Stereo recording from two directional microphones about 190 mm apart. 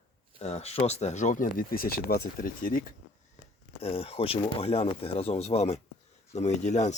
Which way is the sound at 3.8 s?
30° left (ahead or behind).